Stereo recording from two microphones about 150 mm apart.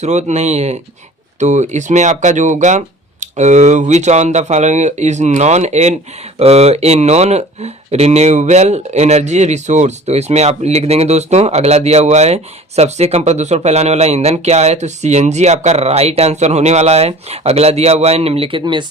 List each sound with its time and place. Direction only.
0.0 s speech: 50° right (ahead or behind); by 18.9 s 30° right (ahead or behind)